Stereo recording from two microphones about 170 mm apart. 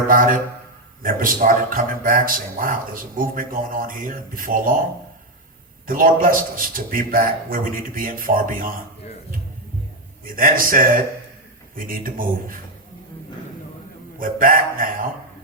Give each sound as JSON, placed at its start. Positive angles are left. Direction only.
{"t": 0.1, "sound": "a man's voice", "side_deg": -55}
{"t": 5.8, "sound": "a man's voice", "side_deg": -55}
{"t": 10.2, "sound": "a man's voice", "side_deg": -55}
{"t": 14.2, "sound": "a man's voice", "side_deg": -55}